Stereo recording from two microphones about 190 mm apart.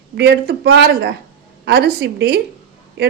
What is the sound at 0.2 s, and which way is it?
Speech, 60° right (ahead or behind).